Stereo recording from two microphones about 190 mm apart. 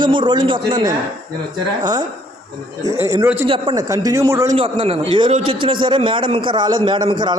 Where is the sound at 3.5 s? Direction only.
20° right (ahead or behind).